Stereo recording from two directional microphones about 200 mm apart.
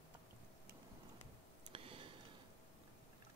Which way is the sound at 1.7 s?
25° right (ahead or behind).